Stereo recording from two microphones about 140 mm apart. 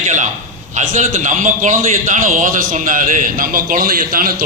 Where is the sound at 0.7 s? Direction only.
60° right (ahead or behind).